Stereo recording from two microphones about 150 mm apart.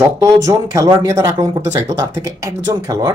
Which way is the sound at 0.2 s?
20° right (ahead or behind).